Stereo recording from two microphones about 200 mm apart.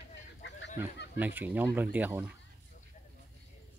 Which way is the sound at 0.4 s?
60° left (ahead or behind).